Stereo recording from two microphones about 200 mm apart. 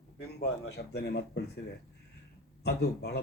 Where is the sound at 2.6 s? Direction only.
55° left (ahead or behind).